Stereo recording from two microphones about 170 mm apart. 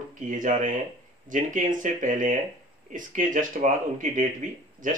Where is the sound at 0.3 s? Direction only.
50° right (ahead or behind).